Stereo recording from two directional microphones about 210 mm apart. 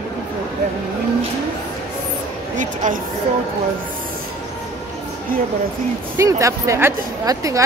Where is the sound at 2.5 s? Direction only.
35° right (ahead or behind).